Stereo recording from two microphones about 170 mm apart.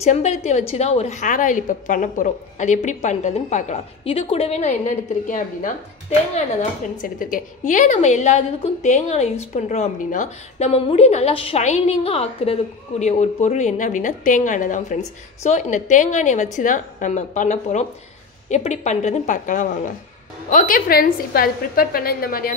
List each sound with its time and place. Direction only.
0.0 s a woman's voice: 40° left (ahead or behind); by 22.5 s 60° left (ahead or behind)